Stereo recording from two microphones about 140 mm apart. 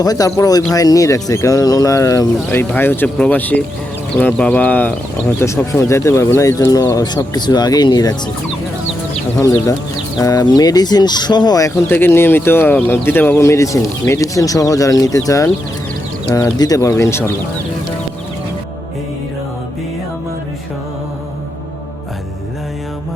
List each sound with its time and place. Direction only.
0.0 s speech: 25° left (ahead or behind)
9.4 s speech: 20° left (ahead or behind)
11.9 s speech: 15° left (ahead or behind)